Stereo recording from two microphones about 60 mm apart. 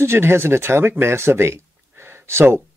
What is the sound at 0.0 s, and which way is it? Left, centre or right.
Speech, right.